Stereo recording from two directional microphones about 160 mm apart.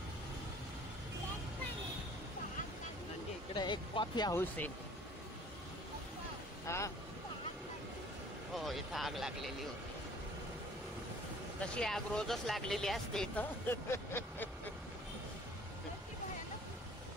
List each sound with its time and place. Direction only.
3.5 s speech: 30° left (ahead or behind)
4.4 s speech: 10° left (ahead or behind)
6.7 s speech: 15° left (ahead or behind)
8.5 s speech: centre (ahead or behind)
11.6 s speech: 5° left (ahead or behind)